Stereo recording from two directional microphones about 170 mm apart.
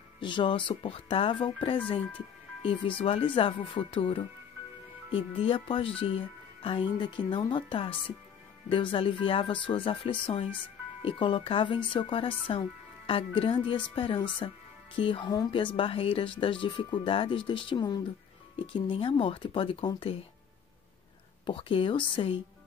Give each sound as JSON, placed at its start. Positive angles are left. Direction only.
{"t": 0.2, "sound": "speech", "side_deg": 30}
{"t": 21.5, "sound": "speech", "side_deg": 30}